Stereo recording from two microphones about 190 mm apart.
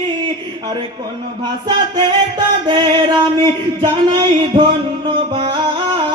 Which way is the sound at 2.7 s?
25° right (ahead or behind).